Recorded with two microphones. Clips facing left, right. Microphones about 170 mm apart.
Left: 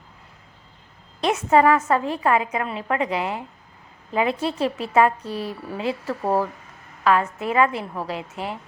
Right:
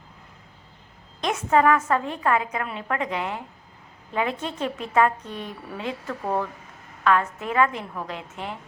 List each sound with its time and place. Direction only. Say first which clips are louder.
1.3 s a woman's voice: left 3 dB; 10° left (ahead or behind)
5.2 s a woman's voice: left 6 dB; 35° left (ahead or behind)
5.7 s a woman's voice: left 5 dB; 5° left (ahead or behind)
6.2 s a woman's voice: left 4 dB; 35° left (ahead or behind)
7.0 s a woman's voice: left 2 dB; 10° left (ahead or behind)